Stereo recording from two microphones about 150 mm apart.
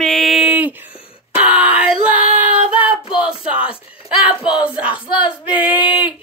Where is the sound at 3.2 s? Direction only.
10° right (ahead or behind).